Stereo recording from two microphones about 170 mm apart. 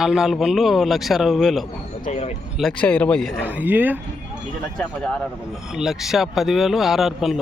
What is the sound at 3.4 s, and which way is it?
Speech, 10° right (ahead or behind).